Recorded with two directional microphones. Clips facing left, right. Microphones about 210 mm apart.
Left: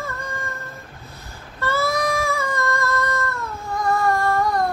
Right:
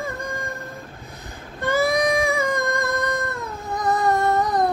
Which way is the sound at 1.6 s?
15° right (ahead or behind).